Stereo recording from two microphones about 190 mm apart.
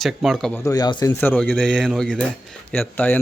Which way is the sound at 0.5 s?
20° left (ahead or behind).